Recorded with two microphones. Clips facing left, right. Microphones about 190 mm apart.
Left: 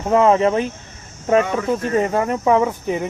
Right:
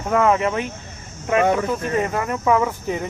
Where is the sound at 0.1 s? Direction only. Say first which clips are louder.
Left 4 dB; 30° left (ahead or behind).